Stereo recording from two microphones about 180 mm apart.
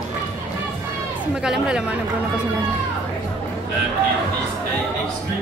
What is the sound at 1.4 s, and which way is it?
Speech, 5° right (ahead or behind).